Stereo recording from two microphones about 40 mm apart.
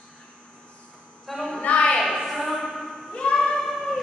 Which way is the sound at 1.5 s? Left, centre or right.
Left.